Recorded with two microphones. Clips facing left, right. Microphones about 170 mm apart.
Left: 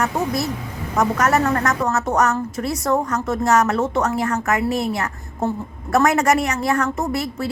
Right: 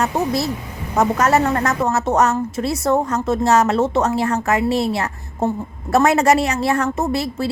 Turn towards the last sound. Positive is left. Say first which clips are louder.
# right 3 dB
turn(degrees=-30)  # may be behind; listen again after turning